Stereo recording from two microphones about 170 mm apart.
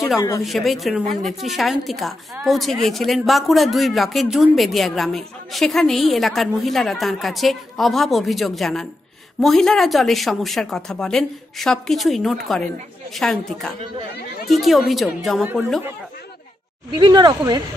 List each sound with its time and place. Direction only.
0.4 s speech: centre (ahead or behind)
16.9 s speech: 25° right (ahead or behind)